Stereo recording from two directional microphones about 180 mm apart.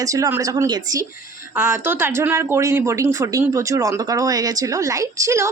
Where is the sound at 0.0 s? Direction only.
20° right (ahead or behind).